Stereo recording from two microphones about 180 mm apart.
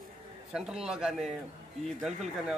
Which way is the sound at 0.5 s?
5° right (ahead or behind).